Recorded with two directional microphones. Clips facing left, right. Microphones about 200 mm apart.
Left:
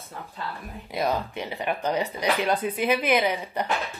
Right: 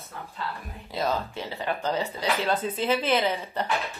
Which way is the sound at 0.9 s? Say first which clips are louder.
Left 2 dB; 15° left (ahead or behind).